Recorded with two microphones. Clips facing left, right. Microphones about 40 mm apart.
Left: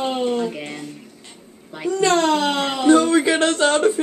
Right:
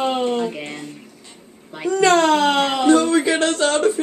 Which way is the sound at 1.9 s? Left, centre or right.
Right.